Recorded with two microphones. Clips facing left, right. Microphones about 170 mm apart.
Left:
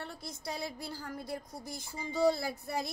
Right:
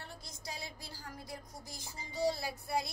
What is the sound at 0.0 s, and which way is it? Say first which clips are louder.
A woman's voice: left 6 dB; 55° left (ahead or behind).